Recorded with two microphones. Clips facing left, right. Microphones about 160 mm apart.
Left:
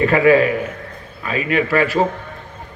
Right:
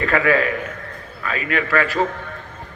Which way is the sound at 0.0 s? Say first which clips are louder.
Left 6 dB; 20° left (ahead or behind).